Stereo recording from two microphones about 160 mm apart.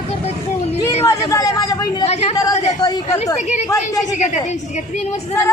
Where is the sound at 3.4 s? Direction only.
45° left (ahead or behind).